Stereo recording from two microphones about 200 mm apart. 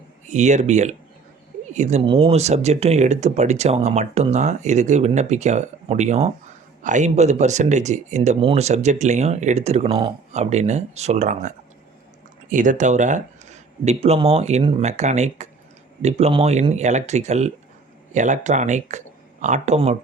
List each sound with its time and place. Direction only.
0.3 s speech: 35° right (ahead or behind)